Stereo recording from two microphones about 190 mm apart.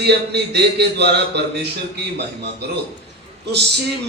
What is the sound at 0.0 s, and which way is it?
A man's voice, 60° right (ahead or behind).